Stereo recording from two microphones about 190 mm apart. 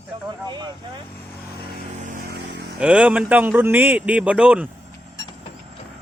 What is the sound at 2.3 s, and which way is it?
Vehicle, 60° right (ahead or behind).